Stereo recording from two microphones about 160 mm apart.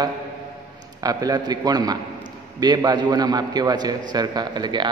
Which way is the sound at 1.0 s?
25° right (ahead or behind).